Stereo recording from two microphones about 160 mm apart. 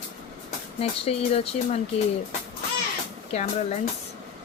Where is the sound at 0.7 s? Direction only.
40° left (ahead or behind).